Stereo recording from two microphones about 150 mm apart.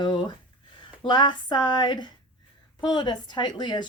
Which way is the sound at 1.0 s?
30° left (ahead or behind).